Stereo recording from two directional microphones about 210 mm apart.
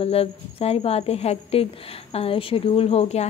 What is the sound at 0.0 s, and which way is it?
A woman's voice, 30° left (ahead or behind).